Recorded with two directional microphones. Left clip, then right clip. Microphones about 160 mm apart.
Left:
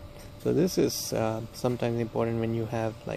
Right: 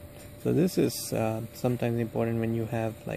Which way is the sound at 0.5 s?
50° right (ahead or behind).